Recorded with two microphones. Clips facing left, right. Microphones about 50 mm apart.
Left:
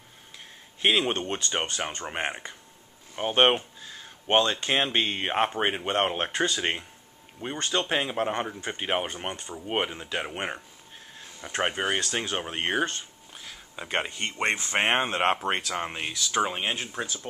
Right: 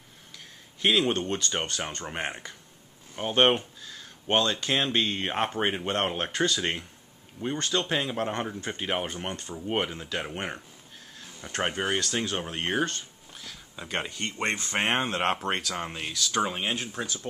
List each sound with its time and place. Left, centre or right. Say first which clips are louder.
0.8 s speech: even; left
12.7 s a sound: left 1 dB; centre
14.3 s speech: left 3 dB; left